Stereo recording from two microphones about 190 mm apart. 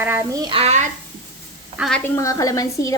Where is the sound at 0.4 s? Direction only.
30° right (ahead or behind).